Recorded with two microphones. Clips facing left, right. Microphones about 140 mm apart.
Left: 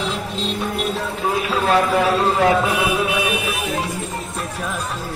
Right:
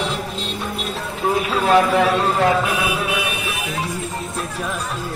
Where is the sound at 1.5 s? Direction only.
Centre (ahead or behind).